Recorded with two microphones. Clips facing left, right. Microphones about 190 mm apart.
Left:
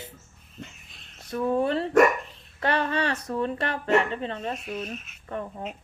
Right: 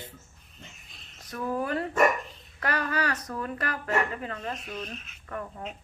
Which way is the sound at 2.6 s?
25° left (ahead or behind).